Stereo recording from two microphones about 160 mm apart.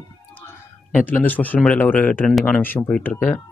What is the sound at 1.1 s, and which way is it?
Speech, 10° left (ahead or behind).